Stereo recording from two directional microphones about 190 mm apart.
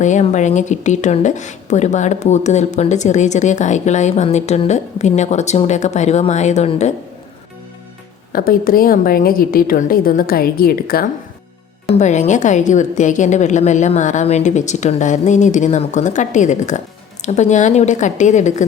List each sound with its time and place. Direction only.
0.0 s a woman's voice: 40° left (ahead or behind)
8.3 s a woman's voice: 50° left (ahead or behind)
11.9 s a woman's voice: 40° left (ahead or behind)